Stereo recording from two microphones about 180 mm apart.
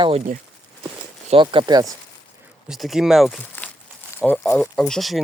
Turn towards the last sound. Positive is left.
turn(degrees=0)  # may be behind; listen again after turning